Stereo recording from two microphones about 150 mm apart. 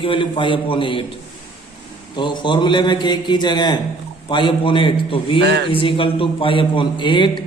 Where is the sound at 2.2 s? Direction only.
30° left (ahead or behind).